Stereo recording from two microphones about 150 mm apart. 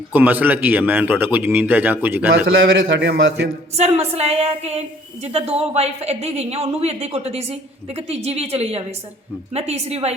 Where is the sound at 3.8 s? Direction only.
45° right (ahead or behind).